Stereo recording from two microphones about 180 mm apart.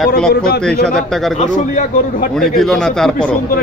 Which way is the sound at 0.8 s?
Centre (ahead or behind).